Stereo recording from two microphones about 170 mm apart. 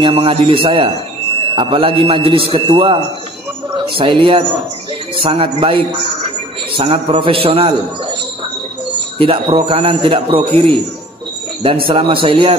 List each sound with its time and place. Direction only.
0.0 s speech: 35° right (ahead or behind)
9.2 s speech: 30° right (ahead or behind)
11.9 s speech: 30° right (ahead or behind)